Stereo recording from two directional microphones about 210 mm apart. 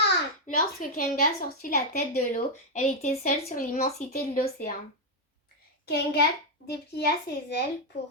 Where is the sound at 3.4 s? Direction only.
45° left (ahead or behind).